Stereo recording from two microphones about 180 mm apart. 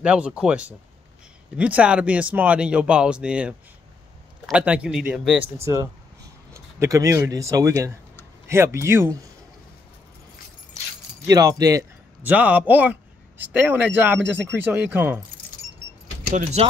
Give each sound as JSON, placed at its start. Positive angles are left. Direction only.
{"t": 0.0, "sound": "speech", "side_deg": -5}
{"t": 5.6, "sound": "speech", "side_deg": -15}
{"t": 11.2, "sound": "speech", "side_deg": -20}
{"t": 12.2, "sound": "speech", "side_deg": -10}
{"t": 16.6, "sound": "speech", "side_deg": -35}